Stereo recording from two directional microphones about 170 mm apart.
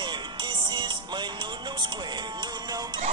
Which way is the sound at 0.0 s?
25° right (ahead or behind).